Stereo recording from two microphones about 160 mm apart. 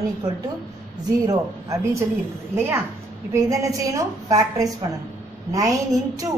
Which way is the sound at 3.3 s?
20° right (ahead or behind).